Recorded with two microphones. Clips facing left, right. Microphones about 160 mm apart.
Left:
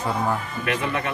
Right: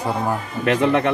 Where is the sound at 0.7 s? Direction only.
85° right.